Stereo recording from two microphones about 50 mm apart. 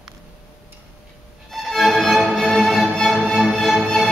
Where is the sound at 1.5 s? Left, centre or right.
Centre.